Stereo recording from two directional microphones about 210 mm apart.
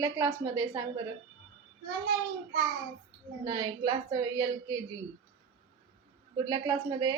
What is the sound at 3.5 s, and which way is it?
Speech, 20° right (ahead or behind).